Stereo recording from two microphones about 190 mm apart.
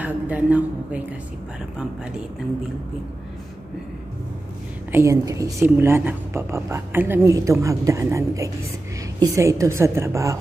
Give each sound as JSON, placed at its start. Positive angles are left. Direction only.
{"t": 0.0, "sound": "a woman's voice", "side_deg": -10}
{"t": 4.9, "sound": "a woman's voice", "side_deg": -15}